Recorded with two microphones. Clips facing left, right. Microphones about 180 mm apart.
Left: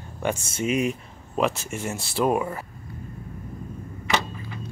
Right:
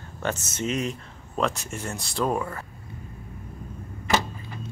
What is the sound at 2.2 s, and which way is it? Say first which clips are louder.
Speech: left 3 dB; 15° left (ahead or behind).